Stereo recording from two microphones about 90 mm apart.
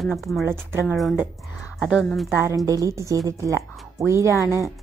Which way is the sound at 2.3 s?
30° right (ahead or behind).